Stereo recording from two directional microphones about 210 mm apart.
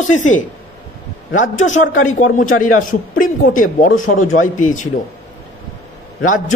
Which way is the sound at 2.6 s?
75° left (ahead or behind).